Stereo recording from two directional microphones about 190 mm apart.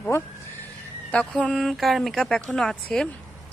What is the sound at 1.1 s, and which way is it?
Speech, 5° left (ahead or behind).